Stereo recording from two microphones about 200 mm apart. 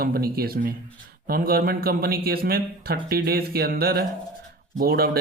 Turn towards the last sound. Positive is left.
turn(degrees=-50)  # may be behind; listen again after turning